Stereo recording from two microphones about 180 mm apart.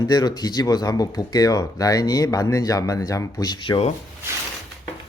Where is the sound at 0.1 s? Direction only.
20° left (ahead or behind).